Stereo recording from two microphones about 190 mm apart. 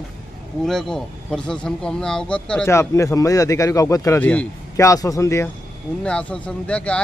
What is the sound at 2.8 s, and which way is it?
Speech, 15° left (ahead or behind).